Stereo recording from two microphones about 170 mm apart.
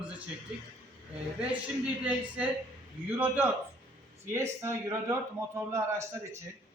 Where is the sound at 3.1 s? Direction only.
10° right (ahead or behind).